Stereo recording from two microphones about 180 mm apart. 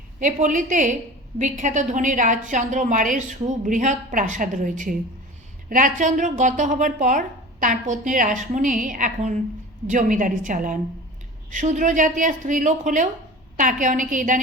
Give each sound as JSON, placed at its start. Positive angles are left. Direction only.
{"t": 0.2, "sound": "a woman's voice", "side_deg": -45}